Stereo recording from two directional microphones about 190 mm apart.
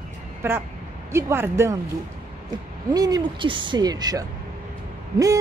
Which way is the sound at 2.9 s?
20° right (ahead or behind).